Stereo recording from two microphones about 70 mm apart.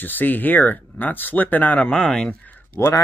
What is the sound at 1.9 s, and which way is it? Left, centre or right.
Speech, centre.